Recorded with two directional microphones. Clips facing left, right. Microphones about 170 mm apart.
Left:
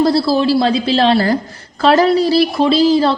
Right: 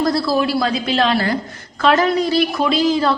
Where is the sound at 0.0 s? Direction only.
30° left (ahead or behind).